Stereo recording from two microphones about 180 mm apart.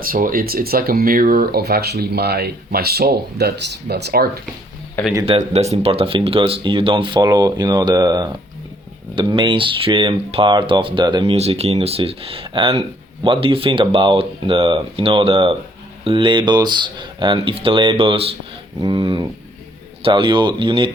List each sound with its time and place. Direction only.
0.0 s speech: 50° right (ahead or behind)
5.2 s speech: 35° right (ahead or behind)